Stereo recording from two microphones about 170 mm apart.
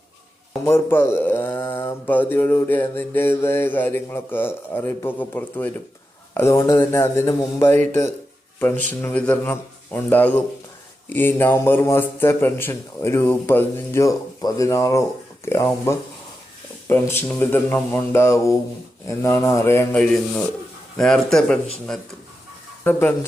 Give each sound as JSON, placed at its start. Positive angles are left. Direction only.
{"t": 0.6, "sound": "speech", "side_deg": 15}